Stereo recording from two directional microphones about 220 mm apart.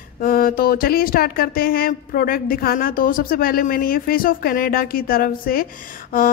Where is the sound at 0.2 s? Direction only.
40° left (ahead or behind).